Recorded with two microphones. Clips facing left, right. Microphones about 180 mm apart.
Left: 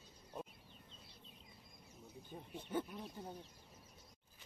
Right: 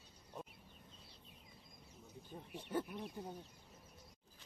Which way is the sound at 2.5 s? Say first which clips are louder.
Right 1 dB; 10° right (ahead or behind).